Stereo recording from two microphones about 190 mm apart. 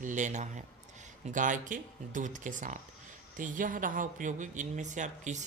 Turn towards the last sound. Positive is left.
turn(degrees=-40)  # may be behind; listen again after turning